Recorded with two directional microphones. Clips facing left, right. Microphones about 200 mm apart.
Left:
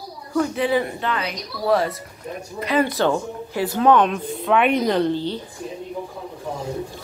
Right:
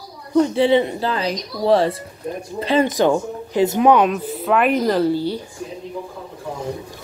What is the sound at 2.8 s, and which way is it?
Speech, 15° right (ahead or behind).